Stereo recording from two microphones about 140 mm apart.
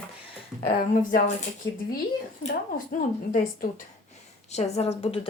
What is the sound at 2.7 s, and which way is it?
A woman's voice, 85° left.